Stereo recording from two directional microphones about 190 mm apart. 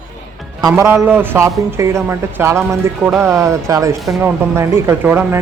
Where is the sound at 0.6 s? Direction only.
15° right (ahead or behind).